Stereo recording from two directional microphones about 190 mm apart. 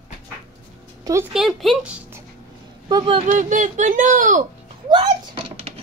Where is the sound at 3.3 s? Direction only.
40° right (ahead or behind).